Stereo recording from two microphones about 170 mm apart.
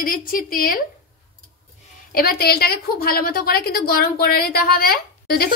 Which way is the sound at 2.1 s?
60° left (ahead or behind).